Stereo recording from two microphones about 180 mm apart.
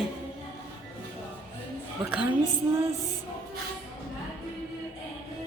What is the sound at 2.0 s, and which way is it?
Speech, 10° right (ahead or behind).